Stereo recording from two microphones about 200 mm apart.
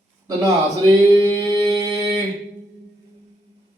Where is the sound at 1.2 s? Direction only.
25° right (ahead or behind).